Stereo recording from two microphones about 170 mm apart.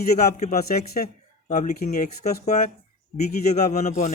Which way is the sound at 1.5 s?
45° left (ahead or behind).